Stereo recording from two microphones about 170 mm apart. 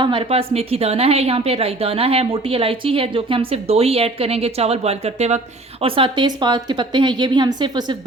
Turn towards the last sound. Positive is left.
turn(degrees=-25)  # may be behind; listen again after turning